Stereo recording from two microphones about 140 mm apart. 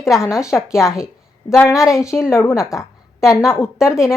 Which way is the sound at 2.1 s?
20° left (ahead or behind).